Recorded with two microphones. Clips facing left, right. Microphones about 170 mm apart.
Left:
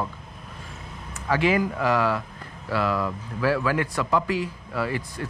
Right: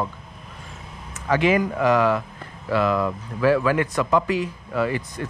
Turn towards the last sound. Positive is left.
turn(degrees=-20)  # may be behind; listen again after turning